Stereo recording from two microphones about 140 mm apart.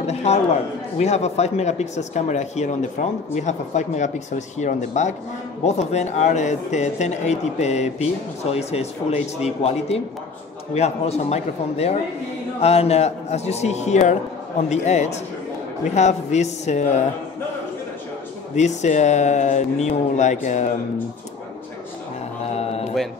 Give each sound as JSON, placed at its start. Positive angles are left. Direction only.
{"t": 0.0, "sound": "a man's voice", "side_deg": 50}
{"t": 18.5, "sound": "speech", "side_deg": 55}
{"t": 22.5, "sound": "music", "side_deg": 45}